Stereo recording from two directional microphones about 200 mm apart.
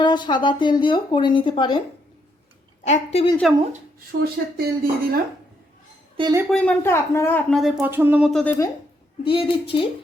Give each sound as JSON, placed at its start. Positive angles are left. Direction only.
{"t": 0.0, "sound": "speech", "side_deg": 20}
{"t": 2.8, "sound": "a woman's voice", "side_deg": 35}
{"t": 3.4, "sound": "a woman's voice", "side_deg": 0}
{"t": 4.2, "sound": "speech", "side_deg": -50}
{"t": 6.5, "sound": "speech", "side_deg": 5}
{"t": 7.8, "sound": "speech", "side_deg": -10}
{"t": 8.3, "sound": "a woman's voice", "side_deg": 5}
{"t": 9.2, "sound": "speech", "side_deg": 25}